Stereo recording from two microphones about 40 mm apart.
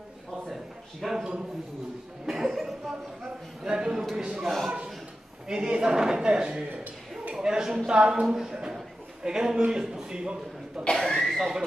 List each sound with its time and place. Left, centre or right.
1.0 s a man's voice: centre
3.6 s a man's voice: centre
5.5 s a man's voice: centre
6.2 s a man's voice: right
7.3 s a man's voice: centre
10.9 s speech: centre
11.1 s speech: centre